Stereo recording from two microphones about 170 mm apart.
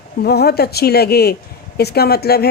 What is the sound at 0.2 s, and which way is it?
A woman's voice, 65° left (ahead or behind).